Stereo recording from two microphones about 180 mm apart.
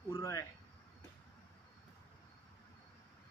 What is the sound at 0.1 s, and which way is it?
Cricket, 15° left (ahead or behind).